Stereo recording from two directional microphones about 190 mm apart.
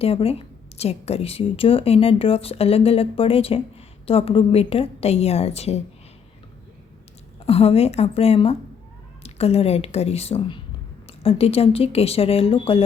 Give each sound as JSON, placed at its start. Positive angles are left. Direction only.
{"t": 0.0, "sound": "a woman's voice", "side_deg": 30}
{"t": 7.3, "sound": "a woman's voice", "side_deg": 30}